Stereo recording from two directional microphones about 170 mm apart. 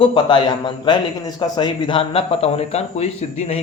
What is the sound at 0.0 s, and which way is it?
A man's voice, 30° left (ahead or behind).